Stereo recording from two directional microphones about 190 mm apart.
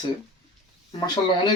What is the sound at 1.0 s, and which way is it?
Speech, 20° left (ahead or behind).